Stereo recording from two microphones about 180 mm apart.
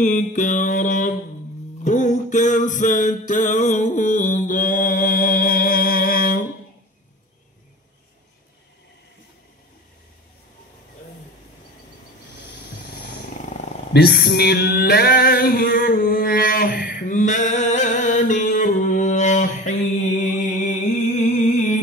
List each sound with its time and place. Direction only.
0.0 s mantra: 45° left (ahead or behind)
1.9 s music: 45° left (ahead or behind)
13.9 s female singing: 60° left (ahead or behind); by 21.7 s 40° left (ahead or behind)